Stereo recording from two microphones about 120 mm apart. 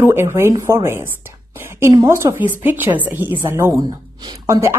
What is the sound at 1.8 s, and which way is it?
Speech, 35° right (ahead or behind).